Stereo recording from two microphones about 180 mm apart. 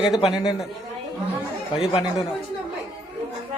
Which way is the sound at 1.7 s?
30° left (ahead or behind).